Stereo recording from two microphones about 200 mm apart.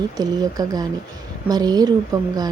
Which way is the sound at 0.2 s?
20° right (ahead or behind).